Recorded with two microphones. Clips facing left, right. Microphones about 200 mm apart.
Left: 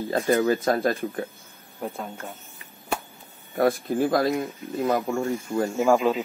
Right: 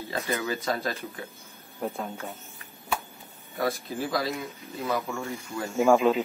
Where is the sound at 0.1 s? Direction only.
50° left (ahead or behind).